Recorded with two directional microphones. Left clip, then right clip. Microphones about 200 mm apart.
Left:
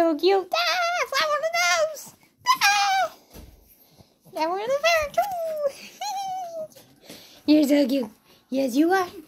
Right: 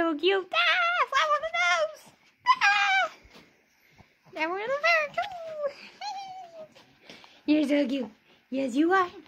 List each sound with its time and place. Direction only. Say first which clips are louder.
0.0 s child singing: left 5 dB; 10° right (ahead or behind)
2.8 s dog: left 2 dB; 20° right (ahead or behind)
4.3 s a sound: left 5 dB; 15° right (ahead or behind)
7.2 s speech: left 6 dB; centre (ahead or behind)